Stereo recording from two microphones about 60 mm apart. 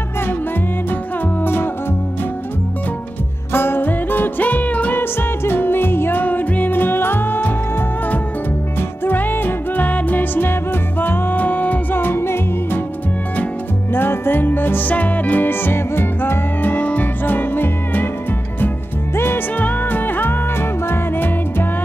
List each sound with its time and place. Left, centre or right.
1.4 s music: left
3.5 s music: left
5.4 s music: left
9.0 s music: left
13.9 s music: left
19.1 s music: left